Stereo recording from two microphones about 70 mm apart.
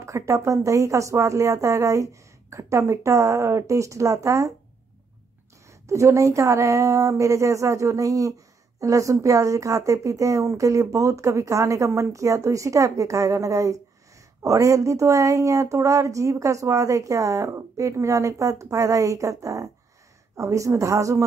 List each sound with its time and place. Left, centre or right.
0.0 s speech: right
5.7 s speech: right